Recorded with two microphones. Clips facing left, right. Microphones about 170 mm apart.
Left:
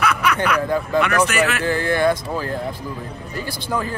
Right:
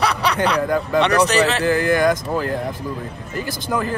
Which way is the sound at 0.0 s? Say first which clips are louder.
Right 1 dB; 35° right (ahead or behind).